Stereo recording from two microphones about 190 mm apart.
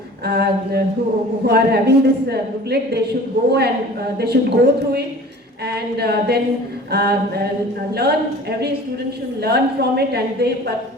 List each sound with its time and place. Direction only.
0.3 s a woman's voice: 60° right (ahead or behind)